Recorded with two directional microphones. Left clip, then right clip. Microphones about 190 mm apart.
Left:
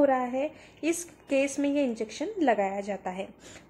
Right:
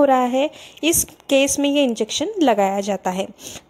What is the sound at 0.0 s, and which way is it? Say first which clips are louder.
Speech: right 9 dB; 45° right (ahead or behind).